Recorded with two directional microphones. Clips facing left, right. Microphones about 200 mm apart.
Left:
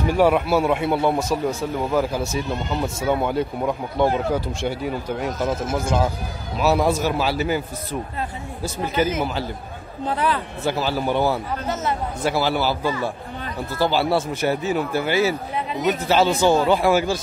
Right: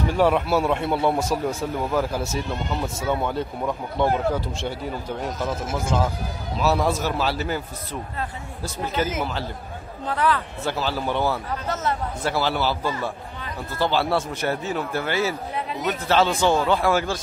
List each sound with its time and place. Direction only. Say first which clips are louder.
0.2 s a man's voice: left 2 dB; 5° left (ahead or behind)
8.8 s a man's voice: left 4 dB; 10° left (ahead or behind)
10.0 s a man's voice: even; 20° left (ahead or behind)
10.6 s a man's voice: left 3 dB; 10° left (ahead or behind)